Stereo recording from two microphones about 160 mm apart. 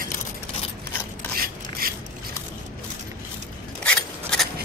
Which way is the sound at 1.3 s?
65° right (ahead or behind).